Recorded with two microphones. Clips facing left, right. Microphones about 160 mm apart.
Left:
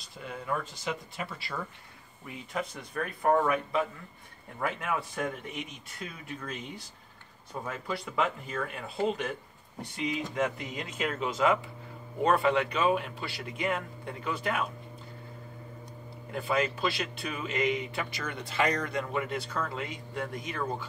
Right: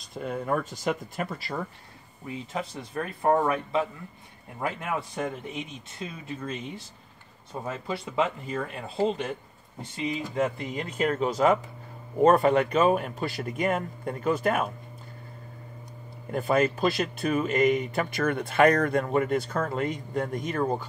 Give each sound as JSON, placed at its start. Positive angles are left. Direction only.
{"t": 0.1, "sound": "speech", "side_deg": -45}
{"t": 2.2, "sound": "speech", "side_deg": -25}
{"t": 4.9, "sound": "speech", "side_deg": -25}
{"t": 16.3, "sound": "speech", "side_deg": -45}